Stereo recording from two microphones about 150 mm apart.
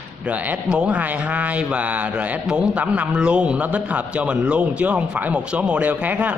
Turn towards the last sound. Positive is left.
turn(degrees=-10)  # may be behind; listen again after turning